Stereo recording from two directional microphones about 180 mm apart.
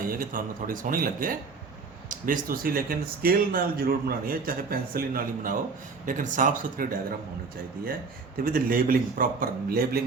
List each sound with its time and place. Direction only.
0.1 s speech: 50° right (ahead or behind)
8.4 s speech: 50° right (ahead or behind)